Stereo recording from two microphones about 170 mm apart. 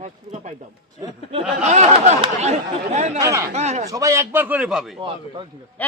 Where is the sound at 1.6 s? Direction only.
40° right (ahead or behind).